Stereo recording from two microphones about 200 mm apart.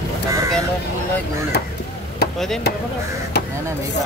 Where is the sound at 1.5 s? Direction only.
55° left (ahead or behind).